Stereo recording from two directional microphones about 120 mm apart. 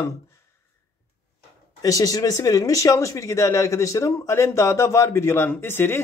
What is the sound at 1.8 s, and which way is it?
Speech, 30° left (ahead or behind).